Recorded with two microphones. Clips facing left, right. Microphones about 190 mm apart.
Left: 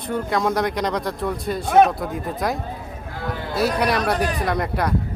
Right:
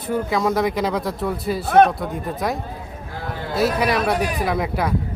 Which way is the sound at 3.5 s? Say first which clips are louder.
Right 1 dB; centre (ahead or behind).